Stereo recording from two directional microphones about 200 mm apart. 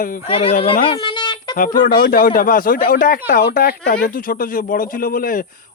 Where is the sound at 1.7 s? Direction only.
45° left (ahead or behind).